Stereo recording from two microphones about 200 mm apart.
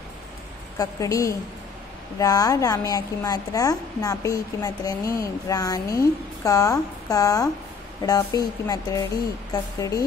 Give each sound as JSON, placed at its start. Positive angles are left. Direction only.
{"t": 0.7, "sound": "a woman's voice", "side_deg": 15}